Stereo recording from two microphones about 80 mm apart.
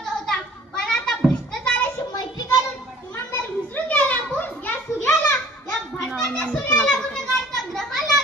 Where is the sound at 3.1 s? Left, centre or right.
Left.